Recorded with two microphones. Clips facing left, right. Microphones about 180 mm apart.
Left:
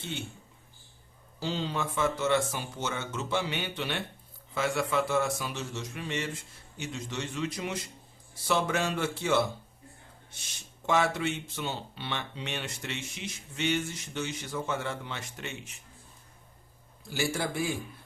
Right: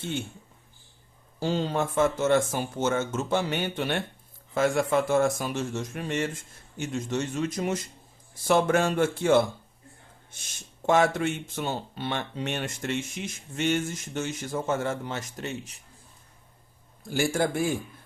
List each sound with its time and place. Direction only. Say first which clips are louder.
0.0 s speech: right 6 dB; 50° right (ahead or behind)
1.4 s speech: right 6 dB; 50° right (ahead or behind)
17.0 s speech: right 6 dB; 50° right (ahead or behind)